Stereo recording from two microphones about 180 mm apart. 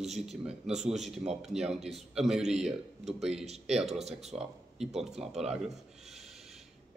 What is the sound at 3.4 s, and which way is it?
Speech, 35° right (ahead or behind).